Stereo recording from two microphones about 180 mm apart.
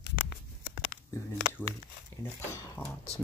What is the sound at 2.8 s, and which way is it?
Speech, 10° left (ahead or behind).